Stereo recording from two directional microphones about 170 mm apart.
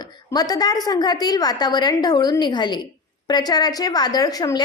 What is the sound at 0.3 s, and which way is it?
A woman's voice, 20° left (ahead or behind).